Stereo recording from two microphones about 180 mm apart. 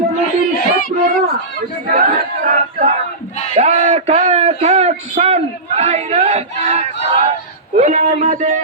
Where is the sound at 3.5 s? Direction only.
40° right (ahead or behind).